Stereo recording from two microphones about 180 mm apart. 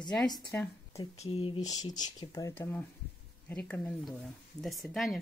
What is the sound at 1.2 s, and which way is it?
Speech, 30° left (ahead or behind).